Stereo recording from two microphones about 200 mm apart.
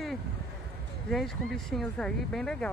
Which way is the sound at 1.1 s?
Centre (ahead or behind).